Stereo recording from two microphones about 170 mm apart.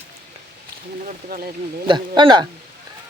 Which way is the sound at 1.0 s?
55° right (ahead or behind).